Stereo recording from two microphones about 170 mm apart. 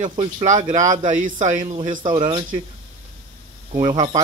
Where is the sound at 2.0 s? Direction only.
30° right (ahead or behind).